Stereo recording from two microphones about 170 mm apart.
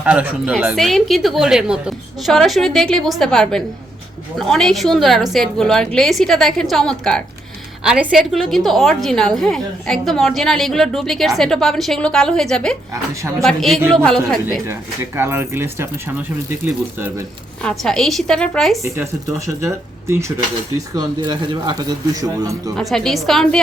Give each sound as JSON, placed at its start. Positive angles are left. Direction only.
{"t": 0.0, "sound": "a woman's voice", "side_deg": -10}
{"t": 14.7, "sound": "speech", "side_deg": -15}
{"t": 17.6, "sound": "a woman's voice", "side_deg": 5}
{"t": 19.6, "sound": "speech", "side_deg": -15}
{"t": 22.8, "sound": "a woman's voice", "side_deg": 0}